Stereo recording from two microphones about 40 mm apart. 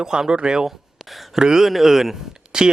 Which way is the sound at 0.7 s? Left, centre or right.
Centre.